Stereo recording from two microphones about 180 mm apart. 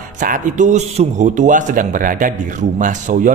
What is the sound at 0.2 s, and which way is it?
Speech, 45° right (ahead or behind).